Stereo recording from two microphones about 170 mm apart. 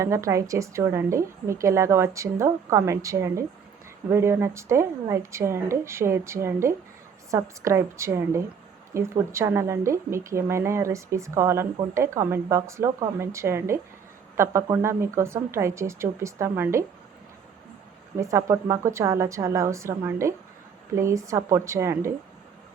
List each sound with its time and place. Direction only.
0.0 s a woman's voice: 15° right (ahead or behind)
18.2 s a woman's voice: 15° right (ahead or behind)